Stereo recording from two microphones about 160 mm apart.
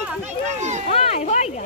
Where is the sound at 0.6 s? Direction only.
45° right (ahead or behind).